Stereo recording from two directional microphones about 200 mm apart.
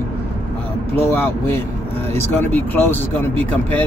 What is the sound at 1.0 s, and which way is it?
Speech, 15° left (ahead or behind).